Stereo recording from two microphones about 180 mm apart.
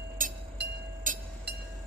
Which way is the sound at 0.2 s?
50° right (ahead or behind).